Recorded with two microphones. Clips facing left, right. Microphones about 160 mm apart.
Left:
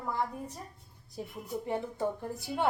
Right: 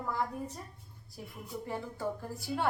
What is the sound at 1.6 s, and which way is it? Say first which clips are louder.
A woman's voice: left 4 dB; 20° left (ahead or behind).